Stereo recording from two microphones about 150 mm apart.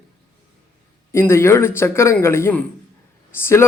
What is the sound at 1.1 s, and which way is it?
A man's voice, 15° left (ahead or behind).